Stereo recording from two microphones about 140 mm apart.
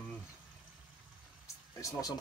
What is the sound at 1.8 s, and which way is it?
Speech, 25° left (ahead or behind).